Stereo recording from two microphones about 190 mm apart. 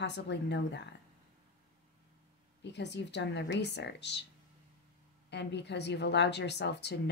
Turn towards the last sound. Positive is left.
turn(degrees=65)  # may be behind; listen again after turning